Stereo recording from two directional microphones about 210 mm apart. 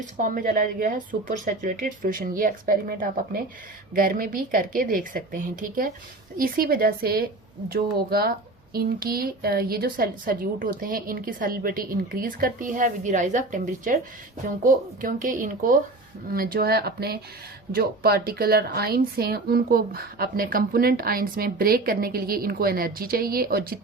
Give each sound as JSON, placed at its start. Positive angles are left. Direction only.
{"t": 0.2, "sound": "a woman's voice", "side_deg": -40}